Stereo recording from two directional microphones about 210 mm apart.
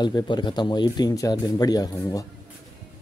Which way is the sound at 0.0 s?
20° left (ahead or behind).